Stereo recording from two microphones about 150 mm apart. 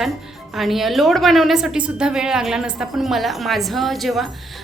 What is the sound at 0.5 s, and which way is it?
A woman's voice, centre (ahead or behind).